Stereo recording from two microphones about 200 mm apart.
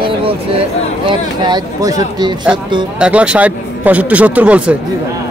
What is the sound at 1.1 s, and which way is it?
Speech, 20° right (ahead or behind).